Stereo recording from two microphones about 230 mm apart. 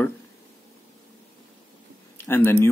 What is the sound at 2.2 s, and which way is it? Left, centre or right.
Speech, centre.